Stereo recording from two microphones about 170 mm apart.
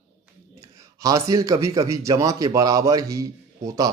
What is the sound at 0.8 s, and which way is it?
A man's voice, 20° right (ahead or behind).